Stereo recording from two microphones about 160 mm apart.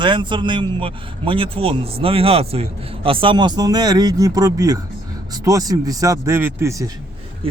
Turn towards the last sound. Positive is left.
turn(degrees=-20)  # may be behind; listen again after turning